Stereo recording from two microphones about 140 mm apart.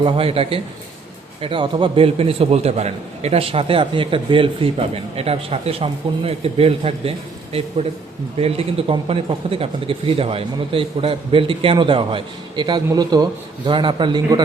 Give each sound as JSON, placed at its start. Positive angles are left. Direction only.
{"t": 0.0, "sound": "speech", "side_deg": -40}